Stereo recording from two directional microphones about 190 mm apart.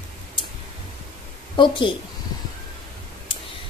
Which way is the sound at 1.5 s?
25° left (ahead or behind).